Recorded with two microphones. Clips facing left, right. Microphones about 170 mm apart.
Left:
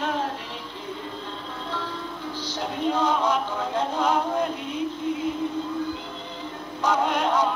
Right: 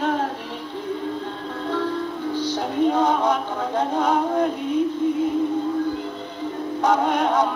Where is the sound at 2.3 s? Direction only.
55° right (ahead or behind).